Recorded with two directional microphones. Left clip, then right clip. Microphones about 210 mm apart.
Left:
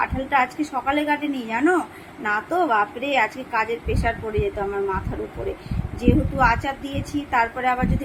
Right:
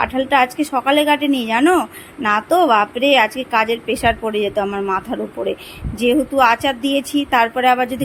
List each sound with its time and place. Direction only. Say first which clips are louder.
0.0 s a woman's voice: right 6 dB; 50° right (ahead or behind)
6.0 s a woman's voice: right 6 dB; 50° right (ahead or behind)